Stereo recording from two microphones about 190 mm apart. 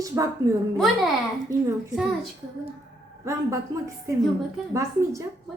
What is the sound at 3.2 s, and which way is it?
A woman's voice, 15° right (ahead or behind).